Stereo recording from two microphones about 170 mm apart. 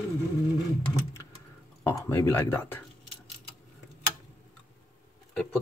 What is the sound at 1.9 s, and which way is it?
Speech, 20° left (ahead or behind).